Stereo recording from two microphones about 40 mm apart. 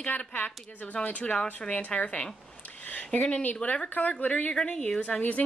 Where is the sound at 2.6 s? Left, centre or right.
Left.